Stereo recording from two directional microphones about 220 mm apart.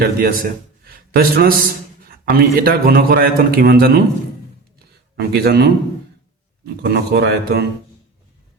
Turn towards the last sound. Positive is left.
turn(degrees=-45)  # may be behind; listen again after turning